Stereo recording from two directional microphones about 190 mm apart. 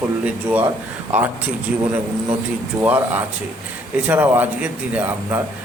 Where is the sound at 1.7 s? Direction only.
5° right (ahead or behind).